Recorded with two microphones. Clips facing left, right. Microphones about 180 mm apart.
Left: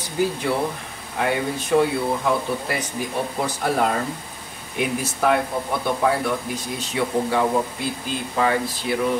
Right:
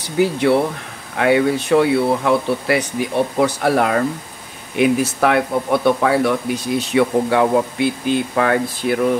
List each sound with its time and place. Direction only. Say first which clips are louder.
0.2 s speech: right 7 dB; 70° right (ahead or behind); by 9.1 s 55° right (ahead or behind)